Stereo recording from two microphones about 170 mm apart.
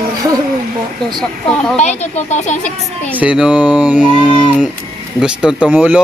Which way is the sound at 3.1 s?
5° right (ahead or behind).